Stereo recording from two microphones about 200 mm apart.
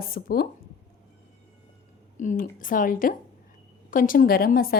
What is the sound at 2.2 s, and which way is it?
Speech, 40° left (ahead or behind).